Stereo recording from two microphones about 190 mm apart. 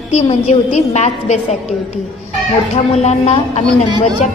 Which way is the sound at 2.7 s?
35° left (ahead or behind).